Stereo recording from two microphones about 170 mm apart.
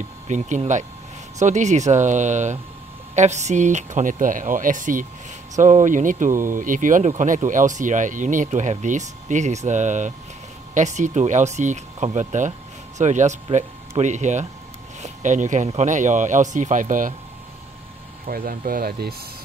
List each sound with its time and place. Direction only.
0.3 s speech: 45° right (ahead or behind)
18.2 s speech: 60° right (ahead or behind)